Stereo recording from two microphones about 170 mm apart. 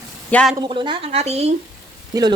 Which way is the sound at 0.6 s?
30° right (ahead or behind).